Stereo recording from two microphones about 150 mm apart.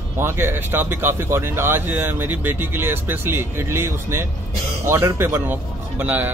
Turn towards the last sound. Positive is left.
turn(degrees=-10)  # may be behind; listen again after turning